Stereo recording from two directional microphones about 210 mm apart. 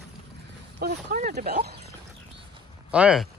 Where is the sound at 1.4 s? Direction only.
50° right (ahead or behind).